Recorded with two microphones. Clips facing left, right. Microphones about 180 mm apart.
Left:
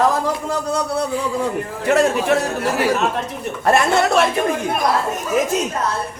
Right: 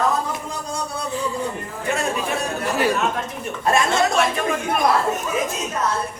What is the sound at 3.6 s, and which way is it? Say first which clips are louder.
Speech: left 3 dB; 65° left (ahead or behind).